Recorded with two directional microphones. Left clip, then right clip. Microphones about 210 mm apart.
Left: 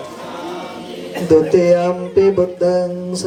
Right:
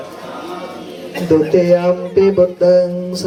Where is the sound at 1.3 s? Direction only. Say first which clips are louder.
Even; 20° left (ahead or behind).